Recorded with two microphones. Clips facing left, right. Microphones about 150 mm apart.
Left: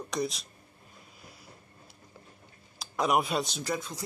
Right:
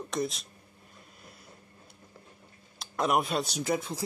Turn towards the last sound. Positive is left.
turn(degrees=-25)  # may be behind; listen again after turning